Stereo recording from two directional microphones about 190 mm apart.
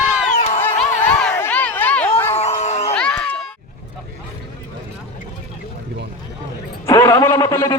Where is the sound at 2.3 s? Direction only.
35° left (ahead or behind).